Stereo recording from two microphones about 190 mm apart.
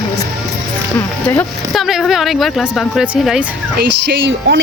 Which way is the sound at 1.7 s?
Centre (ahead or behind).